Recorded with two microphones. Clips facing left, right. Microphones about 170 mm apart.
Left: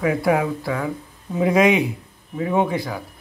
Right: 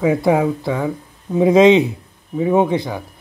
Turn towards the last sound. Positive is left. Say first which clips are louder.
# right 5 dB
turn(degrees=-25)  # may be behind; listen again after turning